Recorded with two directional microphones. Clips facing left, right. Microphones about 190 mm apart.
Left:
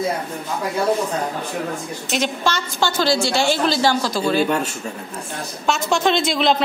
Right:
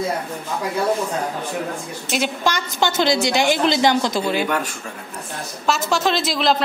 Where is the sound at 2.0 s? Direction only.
10° right (ahead or behind).